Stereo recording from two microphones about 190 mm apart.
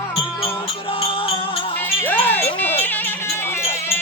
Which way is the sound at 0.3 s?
30° left (ahead or behind).